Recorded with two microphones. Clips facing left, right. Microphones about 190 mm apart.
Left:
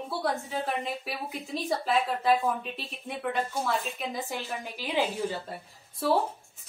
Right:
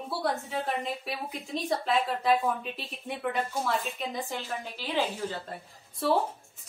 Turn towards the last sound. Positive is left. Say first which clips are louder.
# even
turn(degrees=5)  # may be behind; listen again after turning